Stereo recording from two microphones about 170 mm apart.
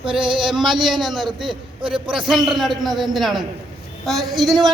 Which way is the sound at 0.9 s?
Centre (ahead or behind).